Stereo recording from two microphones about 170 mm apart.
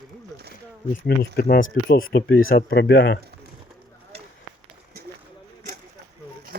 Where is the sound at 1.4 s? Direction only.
60° left (ahead or behind); by 3.1 s 85° left.